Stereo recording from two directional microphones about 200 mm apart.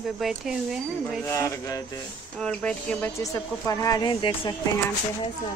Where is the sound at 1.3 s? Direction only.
15° left (ahead or behind).